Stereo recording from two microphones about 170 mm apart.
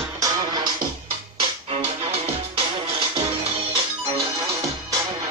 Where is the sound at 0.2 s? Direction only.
25° right (ahead or behind).